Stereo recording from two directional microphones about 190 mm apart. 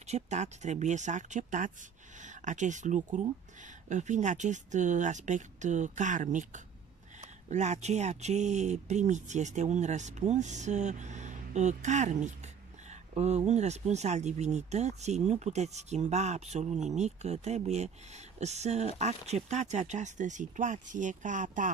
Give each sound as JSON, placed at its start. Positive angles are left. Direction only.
{"t": 0.0, "sound": "speech", "side_deg": -35}